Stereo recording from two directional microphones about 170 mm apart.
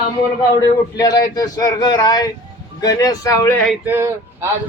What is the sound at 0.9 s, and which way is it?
A man's voice, 20° left (ahead or behind).